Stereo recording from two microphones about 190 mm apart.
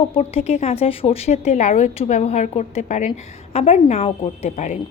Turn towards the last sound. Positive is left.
turn(degrees=35)  # may be behind; listen again after turning